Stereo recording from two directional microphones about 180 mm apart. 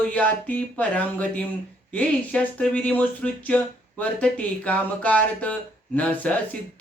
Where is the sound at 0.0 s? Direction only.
10° left (ahead or behind).